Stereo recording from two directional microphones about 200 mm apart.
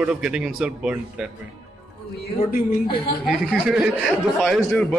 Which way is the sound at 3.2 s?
5° right (ahead or behind).